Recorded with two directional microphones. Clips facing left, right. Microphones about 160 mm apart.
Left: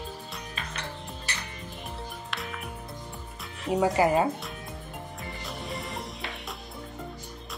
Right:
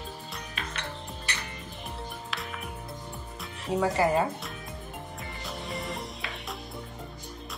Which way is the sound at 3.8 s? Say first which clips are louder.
Left 2 dB; 15° left (ahead or behind).